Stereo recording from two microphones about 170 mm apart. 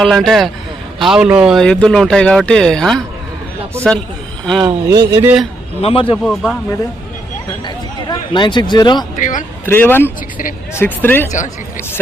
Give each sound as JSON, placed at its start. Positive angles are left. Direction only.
{"t": 0.0, "sound": "speech", "side_deg": 0}
{"t": 4.6, "sound": "speech", "side_deg": -25}
{"t": 5.2, "sound": "a man's voice", "side_deg": -5}
{"t": 5.8, "sound": "a man's voice", "side_deg": 35}
{"t": 6.2, "sound": "speech", "side_deg": 5}
{"t": 7.6, "sound": "speech", "side_deg": 25}
{"t": 9.1, "sound": "a man's voice", "side_deg": 50}
{"t": 9.6, "sound": "speech", "side_deg": 10}